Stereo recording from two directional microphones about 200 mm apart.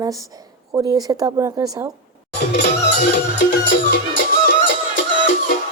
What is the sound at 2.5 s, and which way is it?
Music, 55° left (ahead or behind).